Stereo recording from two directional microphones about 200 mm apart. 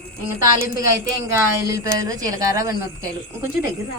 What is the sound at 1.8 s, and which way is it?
Speech, 15° right (ahead or behind).